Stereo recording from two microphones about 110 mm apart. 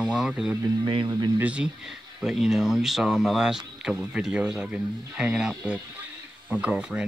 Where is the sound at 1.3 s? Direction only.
10° right (ahead or behind).